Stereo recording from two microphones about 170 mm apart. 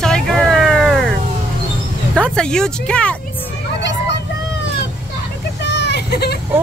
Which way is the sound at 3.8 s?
90° left.